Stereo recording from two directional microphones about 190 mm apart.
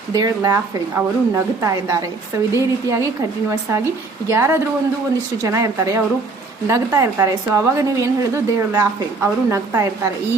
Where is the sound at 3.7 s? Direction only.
15° right (ahead or behind).